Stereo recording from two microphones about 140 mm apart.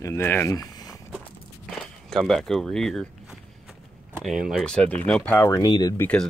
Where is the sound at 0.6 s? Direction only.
25° left (ahead or behind).